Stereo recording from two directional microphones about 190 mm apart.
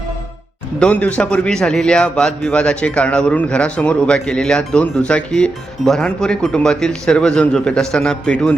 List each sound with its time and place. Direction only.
0.8 s speech: 5° left (ahead or behind)